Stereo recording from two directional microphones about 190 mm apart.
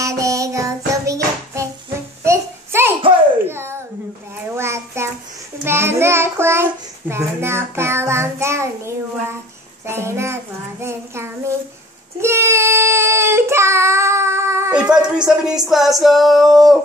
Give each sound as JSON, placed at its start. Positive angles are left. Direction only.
{"t": 0.0, "sound": "child singing", "side_deg": -15}
{"t": 2.2, "sound": "a sound", "side_deg": -15}
{"t": 4.6, "sound": "child singing", "side_deg": -15}